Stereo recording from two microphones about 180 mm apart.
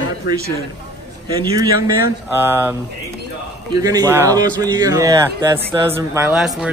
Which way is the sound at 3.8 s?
20° right (ahead or behind).